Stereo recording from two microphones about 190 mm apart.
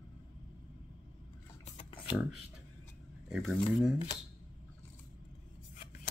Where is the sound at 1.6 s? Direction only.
30° left (ahead or behind).